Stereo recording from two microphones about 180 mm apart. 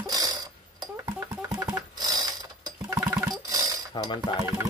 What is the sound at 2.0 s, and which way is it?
Mechanisms, 20° right (ahead or behind).